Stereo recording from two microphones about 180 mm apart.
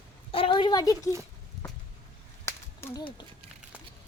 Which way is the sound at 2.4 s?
15° left (ahead or behind).